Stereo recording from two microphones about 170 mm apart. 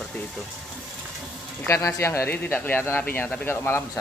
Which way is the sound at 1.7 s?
15° left (ahead or behind).